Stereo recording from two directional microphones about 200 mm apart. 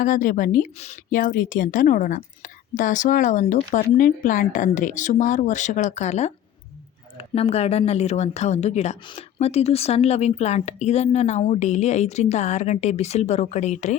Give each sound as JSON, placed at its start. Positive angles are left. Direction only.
{"t": 0.0, "sound": "a woman's voice", "side_deg": 40}